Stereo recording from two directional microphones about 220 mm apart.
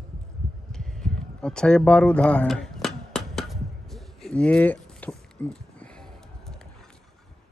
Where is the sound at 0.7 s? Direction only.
Centre (ahead or behind).